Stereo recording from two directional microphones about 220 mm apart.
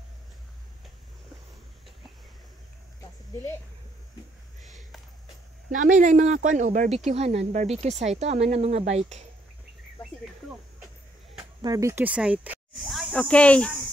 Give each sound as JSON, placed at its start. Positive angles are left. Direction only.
{"t": 5.7, "sound": "speech", "side_deg": -35}
{"t": 11.6, "sound": "speech", "side_deg": -15}